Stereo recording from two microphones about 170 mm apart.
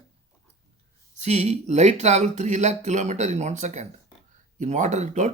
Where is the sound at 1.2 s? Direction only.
40° right (ahead or behind).